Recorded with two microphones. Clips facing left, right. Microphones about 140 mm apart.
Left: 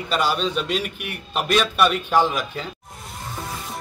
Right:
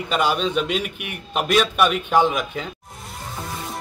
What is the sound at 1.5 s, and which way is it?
A man's voice, 5° right (ahead or behind).